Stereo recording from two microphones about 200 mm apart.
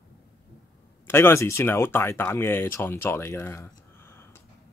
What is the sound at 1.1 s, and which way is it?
Speech, 10° left (ahead or behind).